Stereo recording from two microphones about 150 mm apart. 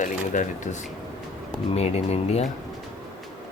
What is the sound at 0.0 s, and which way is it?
Speech, 55° left (ahead or behind).